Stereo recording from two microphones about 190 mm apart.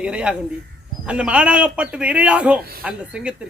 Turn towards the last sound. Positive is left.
turn(degrees=-5)  # may be behind; listen again after turning